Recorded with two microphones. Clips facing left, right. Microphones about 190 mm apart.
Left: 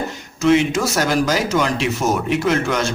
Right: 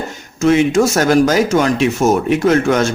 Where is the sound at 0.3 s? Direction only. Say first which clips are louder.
Right 4 dB; 50° right (ahead or behind).